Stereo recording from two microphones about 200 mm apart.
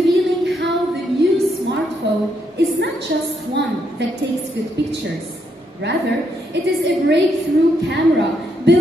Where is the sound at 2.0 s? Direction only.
60° right (ahead or behind).